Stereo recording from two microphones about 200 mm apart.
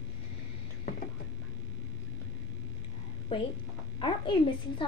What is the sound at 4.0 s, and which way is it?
Speech, 25° left (ahead or behind).